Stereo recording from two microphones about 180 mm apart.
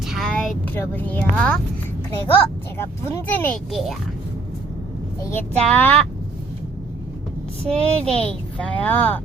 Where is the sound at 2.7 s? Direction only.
15° left (ahead or behind).